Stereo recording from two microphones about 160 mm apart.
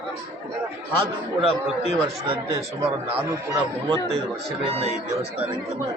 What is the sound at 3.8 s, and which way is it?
Speech, 30° right (ahead or behind).